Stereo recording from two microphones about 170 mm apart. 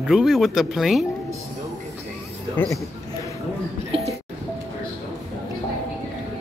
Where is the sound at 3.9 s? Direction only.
35° right (ahead or behind).